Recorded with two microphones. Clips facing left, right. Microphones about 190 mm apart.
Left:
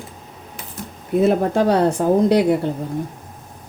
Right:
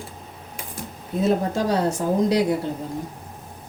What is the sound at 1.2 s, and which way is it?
Speech, 60° left (ahead or behind).